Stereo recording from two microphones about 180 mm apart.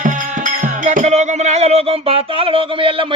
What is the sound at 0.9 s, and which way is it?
Music, 40° right (ahead or behind).